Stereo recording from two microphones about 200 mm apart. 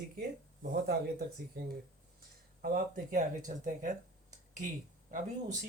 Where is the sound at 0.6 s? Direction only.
45° right (ahead or behind).